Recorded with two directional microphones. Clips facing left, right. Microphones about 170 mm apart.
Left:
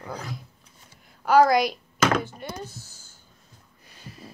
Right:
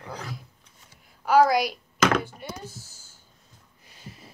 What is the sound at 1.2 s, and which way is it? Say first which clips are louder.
A woman's voice: left 1 dB; 5° right (ahead or behind).